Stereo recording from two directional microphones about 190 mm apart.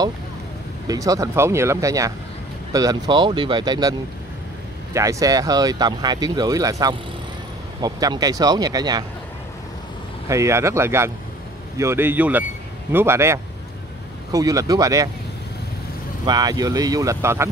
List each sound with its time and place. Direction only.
0.8 s speech: 15° right (ahead or behind)
4.9 s speech: 20° right (ahead or behind)
10.2 s speech: 15° right (ahead or behind)
16.3 s speech: 20° right (ahead or behind)